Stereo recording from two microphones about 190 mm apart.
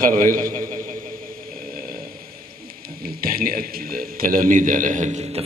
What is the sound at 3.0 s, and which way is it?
A man's voice, 50° right (ahead or behind).